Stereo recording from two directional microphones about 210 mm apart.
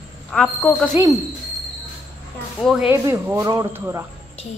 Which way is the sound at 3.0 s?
15° right (ahead or behind).